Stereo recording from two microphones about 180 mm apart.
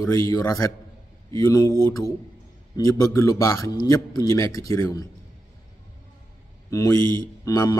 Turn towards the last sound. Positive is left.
turn(degrees=20)  # may be behind; listen again after turning